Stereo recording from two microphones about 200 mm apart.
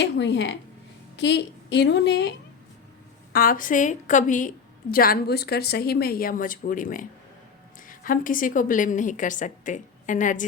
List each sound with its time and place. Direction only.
0.0 s a woman's voice: 65° left (ahead or behind)
3.3 s a woman's voice: 45° left (ahead or behind)